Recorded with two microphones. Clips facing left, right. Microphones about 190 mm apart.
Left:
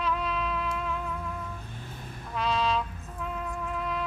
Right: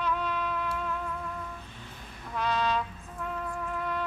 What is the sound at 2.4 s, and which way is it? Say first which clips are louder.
Trumpet: left 1 dB; centre (ahead or behind).